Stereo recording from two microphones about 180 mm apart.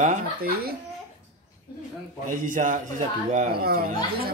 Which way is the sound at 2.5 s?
45° right (ahead or behind).